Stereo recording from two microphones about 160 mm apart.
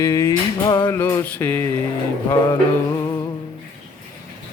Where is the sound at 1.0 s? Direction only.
15° left (ahead or behind).